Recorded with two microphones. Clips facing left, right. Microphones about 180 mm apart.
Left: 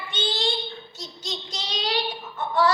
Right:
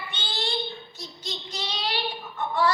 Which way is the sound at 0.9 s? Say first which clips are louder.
Left 2 dB; 90° left.